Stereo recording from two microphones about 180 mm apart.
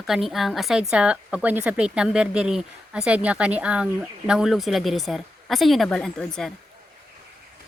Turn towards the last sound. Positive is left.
turn(degrees=5)  # may be behind; listen again after turning